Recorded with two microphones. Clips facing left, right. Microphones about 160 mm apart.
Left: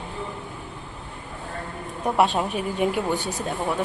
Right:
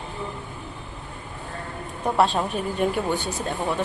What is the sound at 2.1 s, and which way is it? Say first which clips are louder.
Speech: even; 10° left (ahead or behind).